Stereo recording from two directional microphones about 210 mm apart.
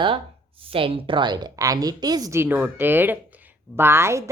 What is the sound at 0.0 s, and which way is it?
A woman's voice, 25° right (ahead or behind).